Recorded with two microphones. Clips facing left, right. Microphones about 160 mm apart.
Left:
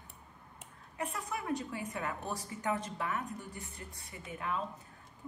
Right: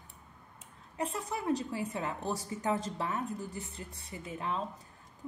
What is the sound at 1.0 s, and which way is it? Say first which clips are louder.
A woman's voice: right 3 dB; 30° right (ahead or behind).